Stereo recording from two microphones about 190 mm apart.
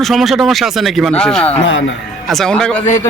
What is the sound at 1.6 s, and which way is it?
Speech, 80° left.